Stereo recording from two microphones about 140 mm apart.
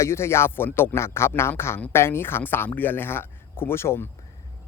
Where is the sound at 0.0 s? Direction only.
20° left (ahead or behind).